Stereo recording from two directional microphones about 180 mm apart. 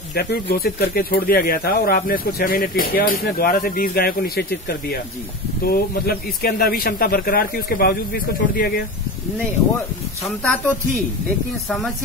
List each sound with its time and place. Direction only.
0.1 s speech: 60° left (ahead or behind)
5.6 s speech: 55° left (ahead or behind)
10.2 s speech: 5° left (ahead or behind)